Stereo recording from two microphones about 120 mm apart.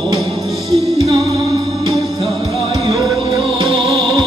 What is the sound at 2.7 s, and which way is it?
Music, 35° right (ahead or behind).